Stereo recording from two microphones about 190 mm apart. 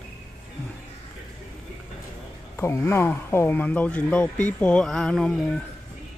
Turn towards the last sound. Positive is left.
turn(degrees=0)  # may be behind; listen again after turning